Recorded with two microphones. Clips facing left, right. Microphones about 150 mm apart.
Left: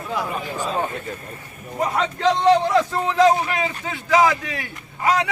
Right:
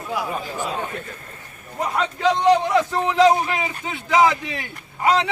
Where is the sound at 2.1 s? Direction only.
10° right (ahead or behind).